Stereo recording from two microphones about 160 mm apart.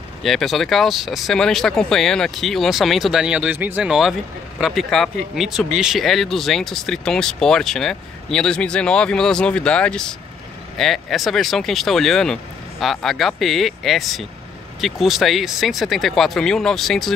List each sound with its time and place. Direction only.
0.2 s speech: centre (ahead or behind)